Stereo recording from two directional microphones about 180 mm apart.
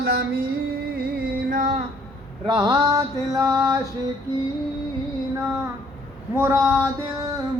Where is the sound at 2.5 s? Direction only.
25° right (ahead or behind).